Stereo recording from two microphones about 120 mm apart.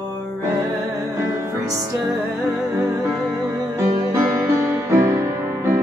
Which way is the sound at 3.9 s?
25° right (ahead or behind).